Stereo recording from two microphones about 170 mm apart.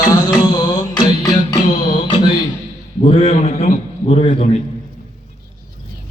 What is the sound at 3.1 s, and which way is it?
A man's voice, 40° left (ahead or behind).